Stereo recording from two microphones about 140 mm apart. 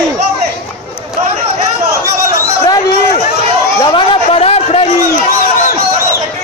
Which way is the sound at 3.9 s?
45° left (ahead or behind).